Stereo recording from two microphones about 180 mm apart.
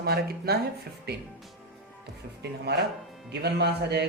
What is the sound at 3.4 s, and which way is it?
Speech, 65° right (ahead or behind).